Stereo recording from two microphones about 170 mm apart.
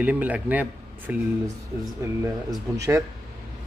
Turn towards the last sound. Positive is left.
turn(degrees=-15)  # may be behind; listen again after turning